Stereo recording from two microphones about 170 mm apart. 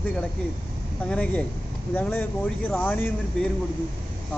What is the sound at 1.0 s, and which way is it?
Speech, 5° left (ahead or behind).